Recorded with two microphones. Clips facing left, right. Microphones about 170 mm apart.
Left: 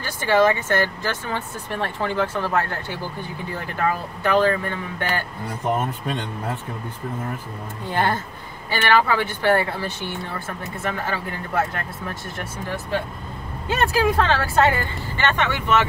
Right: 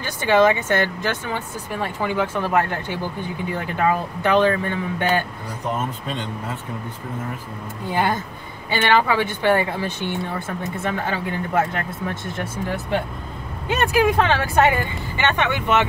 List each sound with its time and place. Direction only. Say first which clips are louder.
0.0 s speech: right 2 dB; 20° right (ahead or behind)
7.9 s speech: right 1 dB; 10° right (ahead or behind)
13.7 s speech: right 2 dB; 15° right (ahead or behind)